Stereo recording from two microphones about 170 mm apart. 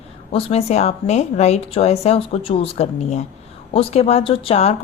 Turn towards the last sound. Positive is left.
turn(degrees=40)  # may be behind; listen again after turning